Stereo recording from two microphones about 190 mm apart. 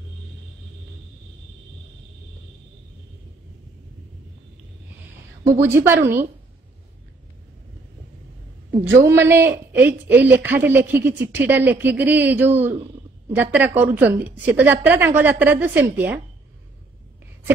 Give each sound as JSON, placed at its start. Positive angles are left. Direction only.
{"t": 5.4, "sound": "speech", "side_deg": -15}
{"t": 8.8, "sound": "speech", "side_deg": -15}